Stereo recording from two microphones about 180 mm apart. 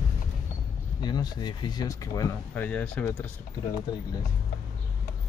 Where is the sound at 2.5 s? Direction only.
5° left (ahead or behind).